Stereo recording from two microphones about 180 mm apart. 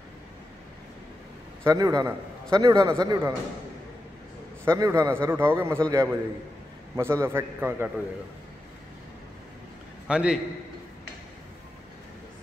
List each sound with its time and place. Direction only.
1.6 s a man's voice: 20° right (ahead or behind)
4.6 s a man's voice: 15° right (ahead or behind)
10.0 s a man's voice: 5° right (ahead or behind)